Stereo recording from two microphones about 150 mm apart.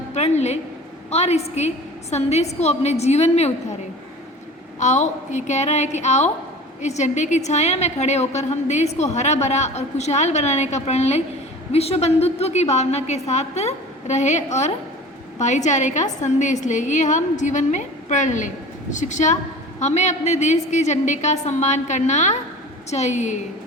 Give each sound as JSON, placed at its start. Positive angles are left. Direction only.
{"t": 0.1, "sound": "a woman's voice", "side_deg": 45}
{"t": 4.8, "sound": "a woman's voice", "side_deg": 50}